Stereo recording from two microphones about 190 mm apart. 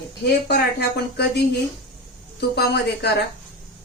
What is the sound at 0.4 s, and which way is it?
Speech, 60° left (ahead or behind).